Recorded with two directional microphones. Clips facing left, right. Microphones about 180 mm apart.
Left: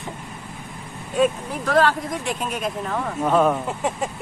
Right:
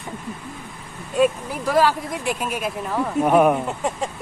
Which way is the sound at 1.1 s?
5° right (ahead or behind).